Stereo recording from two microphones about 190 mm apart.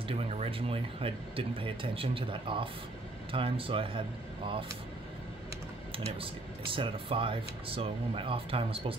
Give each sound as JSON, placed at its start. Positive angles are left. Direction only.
{"t": 0.1, "sound": "speech", "side_deg": -30}
{"t": 5.9, "sound": "speech", "side_deg": -30}